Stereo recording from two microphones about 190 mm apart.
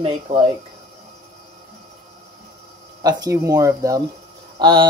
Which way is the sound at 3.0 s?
20° right (ahead or behind).